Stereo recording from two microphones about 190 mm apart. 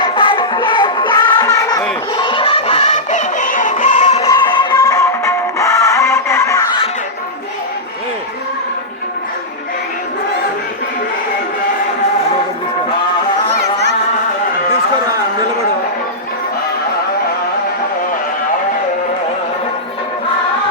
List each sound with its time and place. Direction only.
0.0 s music: 25° left (ahead or behind)
4.3 s music: 20° left (ahead or behind)
13.5 s a sound: 65° right (ahead or behind)